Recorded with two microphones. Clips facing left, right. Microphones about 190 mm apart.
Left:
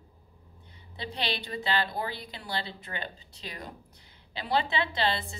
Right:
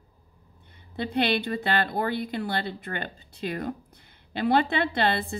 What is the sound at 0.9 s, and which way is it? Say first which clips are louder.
A woman's voice: right 9 dB; 55° right (ahead or behind).